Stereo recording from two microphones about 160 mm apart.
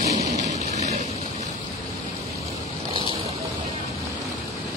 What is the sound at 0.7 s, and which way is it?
Rain, 45° right (ahead or behind).